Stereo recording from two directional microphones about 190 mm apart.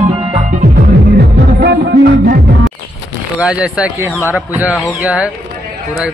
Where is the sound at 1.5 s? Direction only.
55° right (ahead or behind).